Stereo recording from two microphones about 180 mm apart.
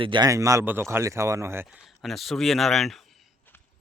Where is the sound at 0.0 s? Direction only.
25° right (ahead or behind).